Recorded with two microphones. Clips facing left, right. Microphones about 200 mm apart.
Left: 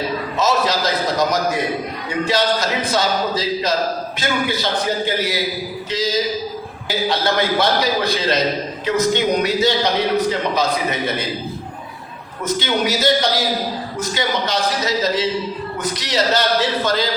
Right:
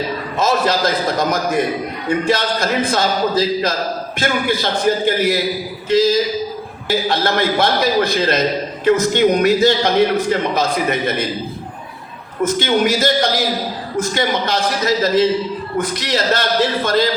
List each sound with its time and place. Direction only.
0.3 s a sound: 50° right (ahead or behind)
2.0 s speech: 50° right (ahead or behind)
12.4 s speech: 50° right (ahead or behind)